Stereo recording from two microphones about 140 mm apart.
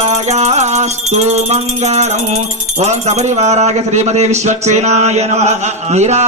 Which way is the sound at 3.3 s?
50° right (ahead or behind).